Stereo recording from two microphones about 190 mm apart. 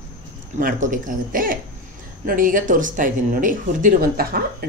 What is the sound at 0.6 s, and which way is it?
A woman's voice, 45° right (ahead or behind).